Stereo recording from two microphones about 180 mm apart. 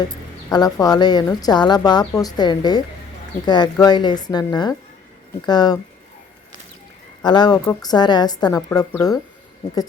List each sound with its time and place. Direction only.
0.5 s a woman's voice: 20° left (ahead or behind)
7.2 s a woman's voice: 25° left (ahead or behind)